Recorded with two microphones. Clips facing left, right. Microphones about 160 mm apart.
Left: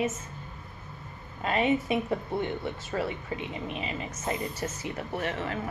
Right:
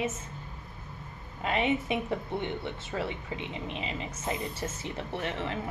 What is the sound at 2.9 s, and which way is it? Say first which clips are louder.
Speech: left 2 dB; 25° right (ahead or behind).